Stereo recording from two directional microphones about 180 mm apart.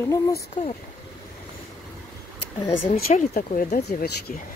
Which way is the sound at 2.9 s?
40° left (ahead or behind).